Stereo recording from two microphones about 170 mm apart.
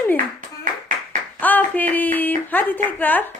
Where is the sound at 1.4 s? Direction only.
10° left (ahead or behind).